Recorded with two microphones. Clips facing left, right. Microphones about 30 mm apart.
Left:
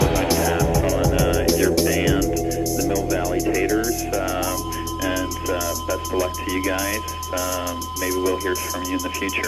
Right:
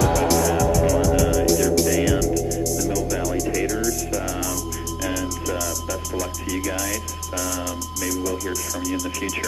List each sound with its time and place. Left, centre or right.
0.0 s music: centre
8.1 s speech: left